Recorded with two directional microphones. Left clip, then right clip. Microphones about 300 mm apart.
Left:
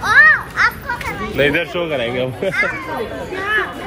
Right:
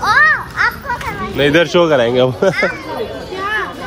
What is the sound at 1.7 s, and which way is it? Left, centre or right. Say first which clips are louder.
Speech: right 9 dB; right.